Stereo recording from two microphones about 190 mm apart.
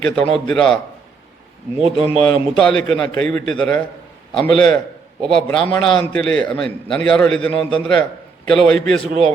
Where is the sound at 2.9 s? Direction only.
5° left (ahead or behind).